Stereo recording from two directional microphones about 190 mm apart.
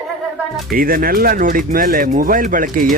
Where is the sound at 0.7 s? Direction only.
50° right (ahead or behind).